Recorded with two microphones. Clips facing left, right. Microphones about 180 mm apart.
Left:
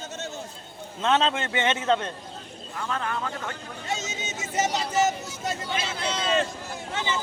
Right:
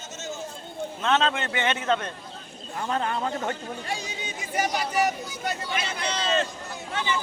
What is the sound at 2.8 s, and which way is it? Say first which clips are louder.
Speech: right 3 dB; 30° right (ahead or behind).